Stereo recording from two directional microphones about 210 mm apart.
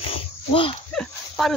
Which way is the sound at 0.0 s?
25° left (ahead or behind).